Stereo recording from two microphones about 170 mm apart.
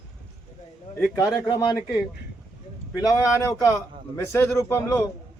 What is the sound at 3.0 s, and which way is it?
A man's voice, 15° left (ahead or behind).